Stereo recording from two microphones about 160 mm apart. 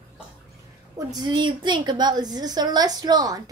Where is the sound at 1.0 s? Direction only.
25° right (ahead or behind).